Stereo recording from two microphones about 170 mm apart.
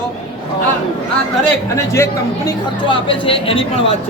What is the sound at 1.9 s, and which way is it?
Speech, 15° left (ahead or behind).